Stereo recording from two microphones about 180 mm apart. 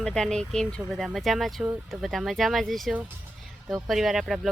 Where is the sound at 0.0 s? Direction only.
5° left (ahead or behind).